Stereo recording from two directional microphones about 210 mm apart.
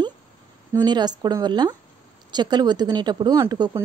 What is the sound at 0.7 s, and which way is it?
Speech, 20° right (ahead or behind).